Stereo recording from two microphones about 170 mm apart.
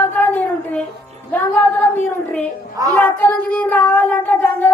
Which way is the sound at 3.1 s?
10° left (ahead or behind).